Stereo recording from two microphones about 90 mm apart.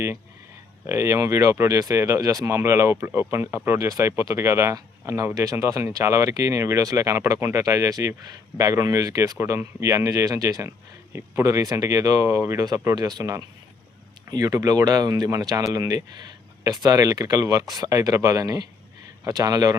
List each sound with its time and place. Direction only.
0.9 s speech: 30° right (ahead or behind)
13.0 s speech: 45° right (ahead or behind)